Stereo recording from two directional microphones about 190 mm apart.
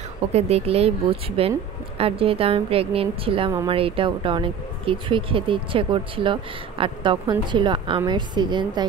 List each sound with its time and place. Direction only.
0.3 s speech: 35° right (ahead or behind)